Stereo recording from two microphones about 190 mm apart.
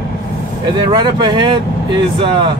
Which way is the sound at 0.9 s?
25° right (ahead or behind).